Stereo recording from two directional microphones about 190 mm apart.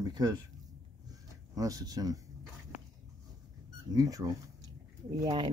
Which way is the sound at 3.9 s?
20° right (ahead or behind).